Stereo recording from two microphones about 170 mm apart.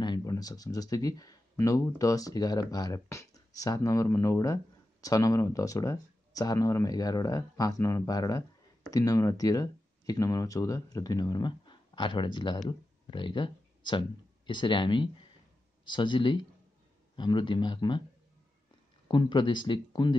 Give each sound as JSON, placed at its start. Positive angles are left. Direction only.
{"t": 0.0, "sound": "speech", "side_deg": 25}
{"t": 19.0, "sound": "speech", "side_deg": 25}